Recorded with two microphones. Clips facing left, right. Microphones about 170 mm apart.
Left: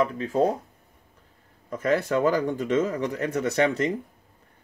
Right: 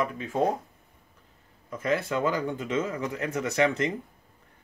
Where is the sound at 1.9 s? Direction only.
40° left (ahead or behind).